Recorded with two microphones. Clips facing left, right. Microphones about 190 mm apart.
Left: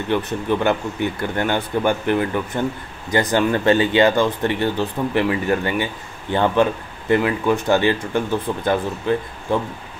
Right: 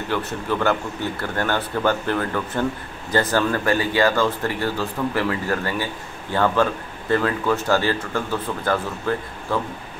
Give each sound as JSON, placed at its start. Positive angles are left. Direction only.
{"t": 0.1, "sound": "speech", "side_deg": 20}